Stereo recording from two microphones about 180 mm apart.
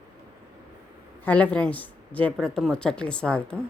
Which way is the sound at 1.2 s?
5° left (ahead or behind).